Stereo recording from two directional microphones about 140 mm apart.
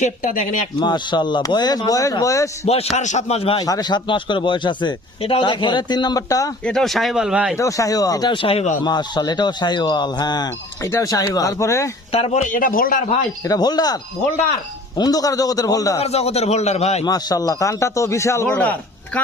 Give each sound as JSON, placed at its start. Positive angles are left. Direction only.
{"t": 0.0, "sound": "a man's voice", "side_deg": 65}
{"t": 0.8, "sound": "a man's voice", "side_deg": 30}
{"t": 2.9, "sound": "a man's voice", "side_deg": 55}
{"t": 3.6, "sound": "a man's voice", "side_deg": 30}
{"t": 6.7, "sound": "speech", "side_deg": 0}
{"t": 7.5, "sound": "a man's voice", "side_deg": 20}
{"t": 8.8, "sound": "a man's voice", "side_deg": 30}
{"t": 12.1, "sound": "a man's voice", "side_deg": 50}
{"t": 13.4, "sound": "a man's voice", "side_deg": 30}
{"t": 16.0, "sound": "a man's voice", "side_deg": 50}
{"t": 17.1, "sound": "a man's voice", "side_deg": 25}
{"t": 18.4, "sound": "speech", "side_deg": 10}